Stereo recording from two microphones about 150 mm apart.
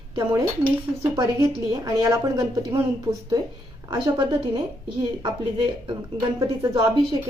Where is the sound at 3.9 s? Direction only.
30° right (ahead or behind).